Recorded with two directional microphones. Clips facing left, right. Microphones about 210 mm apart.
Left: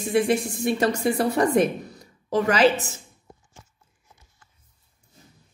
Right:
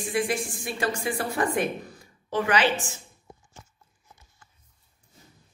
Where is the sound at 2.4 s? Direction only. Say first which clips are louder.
Left 5 dB; 40° left (ahead or behind).